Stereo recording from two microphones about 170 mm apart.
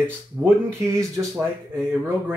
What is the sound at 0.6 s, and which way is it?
Speech, 15° right (ahead or behind).